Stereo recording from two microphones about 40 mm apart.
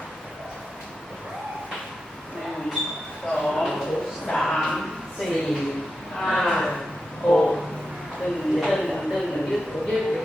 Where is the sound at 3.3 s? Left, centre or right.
Centre.